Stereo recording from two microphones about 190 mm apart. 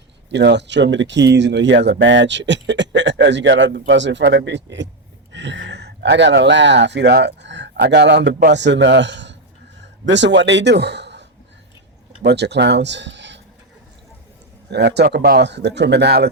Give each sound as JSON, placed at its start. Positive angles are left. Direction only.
{"t": 0.3, "sound": "speech", "side_deg": -65}
{"t": 14.7, "sound": "speech", "side_deg": -65}